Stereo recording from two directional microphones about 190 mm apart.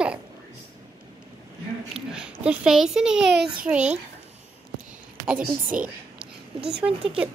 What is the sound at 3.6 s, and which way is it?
Speech, 5° right (ahead or behind).